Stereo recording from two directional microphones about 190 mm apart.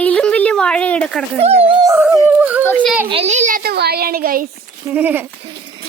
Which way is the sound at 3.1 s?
35° right (ahead or behind).